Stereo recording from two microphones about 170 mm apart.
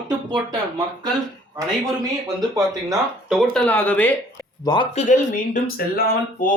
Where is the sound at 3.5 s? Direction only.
5° left (ahead or behind).